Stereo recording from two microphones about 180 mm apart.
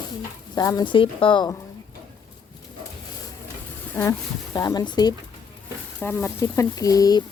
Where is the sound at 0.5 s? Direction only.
20° left (ahead or behind).